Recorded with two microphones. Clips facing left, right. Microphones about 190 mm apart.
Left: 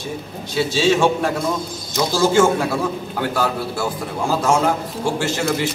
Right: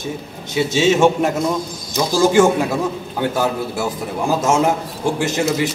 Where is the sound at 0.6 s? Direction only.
20° right (ahead or behind).